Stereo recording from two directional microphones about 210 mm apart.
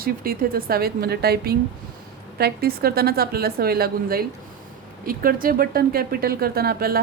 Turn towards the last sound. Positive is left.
turn(degrees=-45)  # may be behind; listen again after turning